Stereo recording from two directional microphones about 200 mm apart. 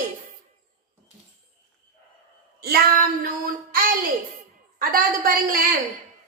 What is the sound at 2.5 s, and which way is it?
Child singing, 50° right (ahead or behind).